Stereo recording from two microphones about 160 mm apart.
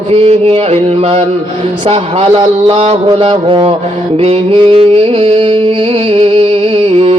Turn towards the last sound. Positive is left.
turn(degrees=-35)  # may be behind; listen again after turning